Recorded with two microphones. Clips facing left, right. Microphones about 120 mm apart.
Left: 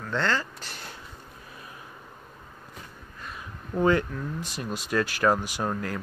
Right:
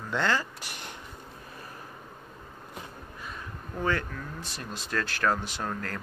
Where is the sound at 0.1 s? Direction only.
15° right (ahead or behind).